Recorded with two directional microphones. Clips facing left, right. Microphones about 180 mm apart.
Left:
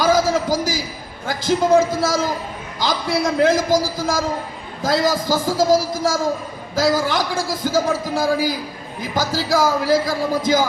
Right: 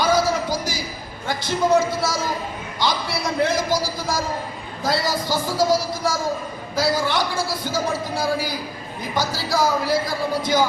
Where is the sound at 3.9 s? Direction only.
45° left (ahead or behind).